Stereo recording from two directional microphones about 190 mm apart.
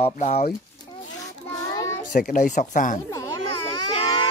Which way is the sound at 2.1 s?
40° left (ahead or behind).